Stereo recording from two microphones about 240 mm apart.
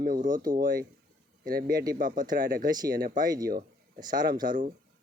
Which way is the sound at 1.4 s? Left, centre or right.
Right.